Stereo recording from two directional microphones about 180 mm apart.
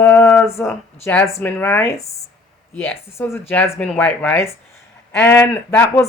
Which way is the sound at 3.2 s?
15° left (ahead or behind).